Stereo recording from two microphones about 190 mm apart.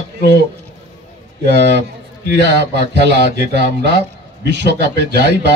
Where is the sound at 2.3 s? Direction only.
60° right (ahead or behind).